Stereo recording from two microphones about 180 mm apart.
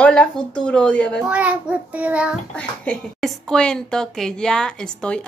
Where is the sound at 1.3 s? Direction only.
5° right (ahead or behind).